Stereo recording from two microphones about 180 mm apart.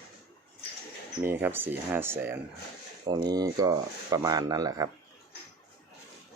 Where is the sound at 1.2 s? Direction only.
10° right (ahead or behind).